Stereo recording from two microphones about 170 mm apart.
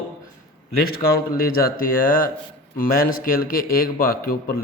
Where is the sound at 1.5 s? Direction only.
60° left (ahead or behind).